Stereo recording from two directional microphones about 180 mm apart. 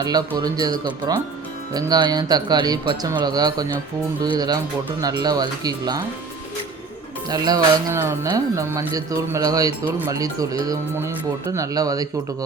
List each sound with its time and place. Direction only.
0.3 s speech: 20° right (ahead or behind)
7.3 s speech: 20° right (ahead or behind)